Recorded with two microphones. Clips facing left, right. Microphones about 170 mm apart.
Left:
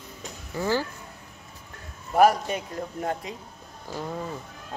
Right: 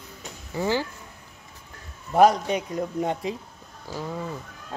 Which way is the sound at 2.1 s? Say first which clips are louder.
Right 2 dB; 5° left (ahead or behind).